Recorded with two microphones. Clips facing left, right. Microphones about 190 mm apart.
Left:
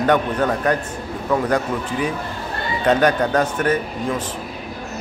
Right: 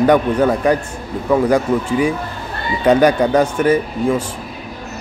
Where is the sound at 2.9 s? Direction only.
10° right (ahead or behind).